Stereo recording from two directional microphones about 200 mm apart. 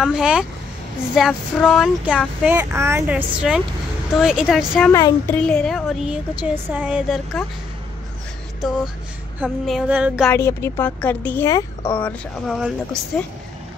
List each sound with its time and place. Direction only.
0.0 s speech: 5° right (ahead or behind)
4.9 s speech: 15° left (ahead or behind)
5.4 s speech: 5° left (ahead or behind)
8.5 s speech: centre (ahead or behind)
10.3 s speech: 10° left (ahead or behind)
12.0 s speech: centre (ahead or behind)